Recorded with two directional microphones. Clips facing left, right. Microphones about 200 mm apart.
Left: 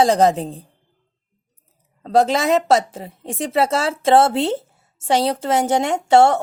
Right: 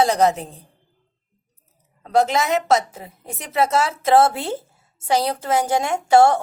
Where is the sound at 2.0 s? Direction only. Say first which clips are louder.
Left 2 dB; 35° left (ahead or behind).